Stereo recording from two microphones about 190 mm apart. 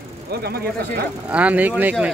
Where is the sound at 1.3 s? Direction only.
5° right (ahead or behind).